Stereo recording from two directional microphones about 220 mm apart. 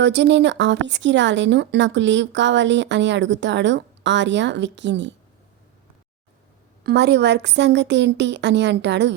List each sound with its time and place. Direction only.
0.0 s speech: 55° right (ahead or behind)
6.8 s a woman's voice: 50° right (ahead or behind)